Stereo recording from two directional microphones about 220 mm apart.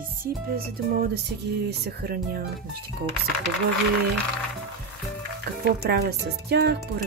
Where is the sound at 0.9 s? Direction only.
40° right (ahead or behind).